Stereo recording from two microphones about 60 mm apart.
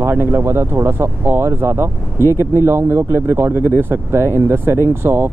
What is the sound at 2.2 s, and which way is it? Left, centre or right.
Speech, left.